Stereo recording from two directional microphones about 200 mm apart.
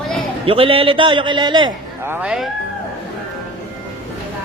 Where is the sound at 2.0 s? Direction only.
10° right (ahead or behind).